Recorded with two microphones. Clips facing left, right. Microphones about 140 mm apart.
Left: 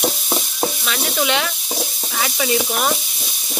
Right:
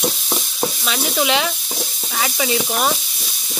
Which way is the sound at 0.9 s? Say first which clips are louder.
Right 3 dB; 5° right (ahead or behind).